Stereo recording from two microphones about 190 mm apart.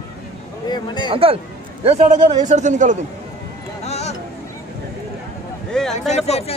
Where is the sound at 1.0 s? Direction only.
30° right (ahead or behind).